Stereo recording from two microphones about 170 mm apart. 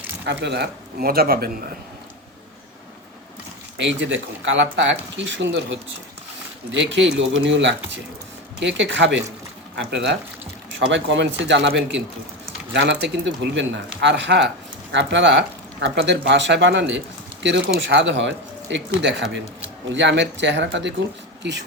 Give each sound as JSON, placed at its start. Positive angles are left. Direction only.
{"t": 0.3, "sound": "a man's voice", "side_deg": -85}
{"t": 3.8, "sound": "speech", "side_deg": -90}
{"t": 12.7, "sound": "speech", "side_deg": -85}